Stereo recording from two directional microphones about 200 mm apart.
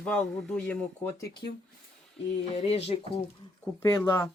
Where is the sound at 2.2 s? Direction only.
35° left (ahead or behind).